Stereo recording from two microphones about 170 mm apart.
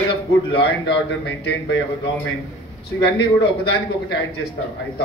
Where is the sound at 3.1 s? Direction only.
85° left.